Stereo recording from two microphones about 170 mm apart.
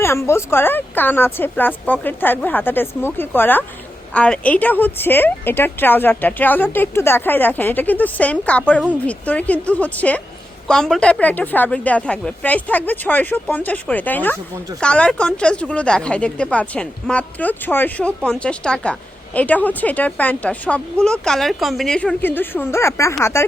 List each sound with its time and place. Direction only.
0.0 s speech: 15° left (ahead or behind)